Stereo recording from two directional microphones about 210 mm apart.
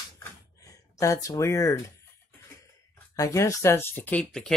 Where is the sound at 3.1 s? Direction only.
15° left (ahead or behind).